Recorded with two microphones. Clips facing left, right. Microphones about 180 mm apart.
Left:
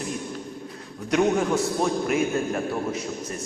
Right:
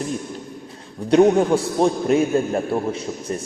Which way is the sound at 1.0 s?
30° right (ahead or behind).